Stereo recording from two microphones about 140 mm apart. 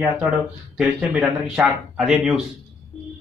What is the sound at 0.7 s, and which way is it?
Speech, 5° right (ahead or behind).